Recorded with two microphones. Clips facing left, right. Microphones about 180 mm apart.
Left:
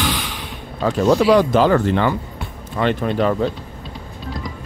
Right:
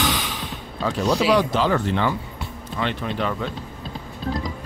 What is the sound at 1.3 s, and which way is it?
Speech, 50° left (ahead or behind).